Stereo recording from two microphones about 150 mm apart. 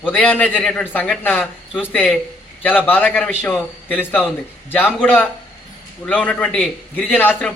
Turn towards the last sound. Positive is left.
turn(degrees=10)  # may be behind; listen again after turning